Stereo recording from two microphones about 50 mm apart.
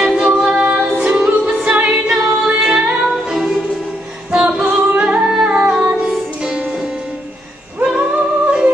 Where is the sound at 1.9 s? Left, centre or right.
Centre.